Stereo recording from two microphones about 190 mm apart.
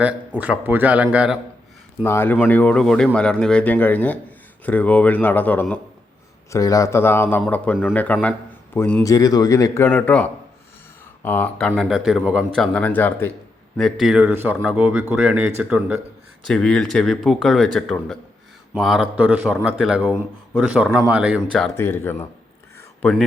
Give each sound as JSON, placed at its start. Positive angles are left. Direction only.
{"t": 0.0, "sound": "a man's voice", "side_deg": -10}
{"t": 2.0, "sound": "speech", "side_deg": 10}
{"t": 12.5, "sound": "a man's voice", "side_deg": 5}
{"t": 16.5, "sound": "speech", "side_deg": 5}
{"t": 21.5, "sound": "speech", "side_deg": 5}